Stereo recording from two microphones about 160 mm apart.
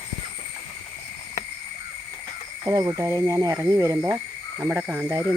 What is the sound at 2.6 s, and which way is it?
Speech, 20° right (ahead or behind).